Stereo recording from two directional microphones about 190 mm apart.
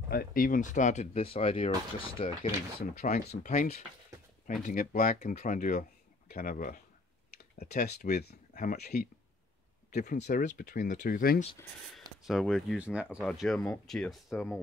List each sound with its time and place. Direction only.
0.1 s speech: 50° left (ahead or behind); by 2.9 s 30° left (ahead or behind)
3.0 s speech: 45° left (ahead or behind)
9.9 s speech: 40° left (ahead or behind)
12.2 s speech: centre (ahead or behind)